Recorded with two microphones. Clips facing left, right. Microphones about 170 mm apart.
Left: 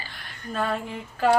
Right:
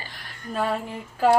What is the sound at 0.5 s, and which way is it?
Speech, 10° right (ahead or behind).